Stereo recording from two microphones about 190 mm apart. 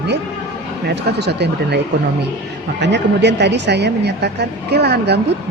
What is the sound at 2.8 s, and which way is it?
Speech, 65° right (ahead or behind).